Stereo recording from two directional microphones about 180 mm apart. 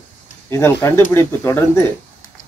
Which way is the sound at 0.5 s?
15° left (ahead or behind).